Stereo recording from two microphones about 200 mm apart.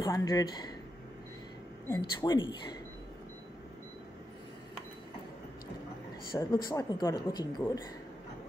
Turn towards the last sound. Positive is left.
turn(degrees=20)  # may be behind; listen again after turning